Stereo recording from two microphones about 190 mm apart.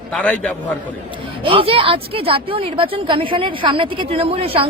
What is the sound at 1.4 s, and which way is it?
A woman's voice, 30° right (ahead or behind).